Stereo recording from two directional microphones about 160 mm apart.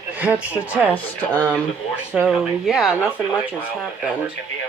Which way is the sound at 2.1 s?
5° right (ahead or behind).